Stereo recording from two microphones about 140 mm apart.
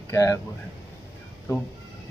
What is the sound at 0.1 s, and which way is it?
Speech, 20° left (ahead or behind).